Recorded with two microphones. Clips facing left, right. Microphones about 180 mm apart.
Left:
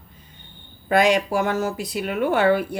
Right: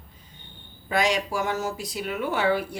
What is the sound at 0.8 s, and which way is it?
Speech, 55° left (ahead or behind).